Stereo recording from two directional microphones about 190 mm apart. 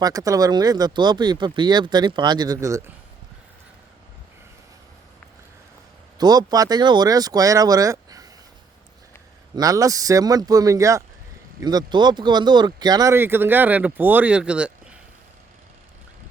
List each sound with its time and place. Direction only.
0.0 s speech: 20° right (ahead or behind)
6.1 s speech: 20° right (ahead or behind)
9.6 s speech: 20° right (ahead or behind)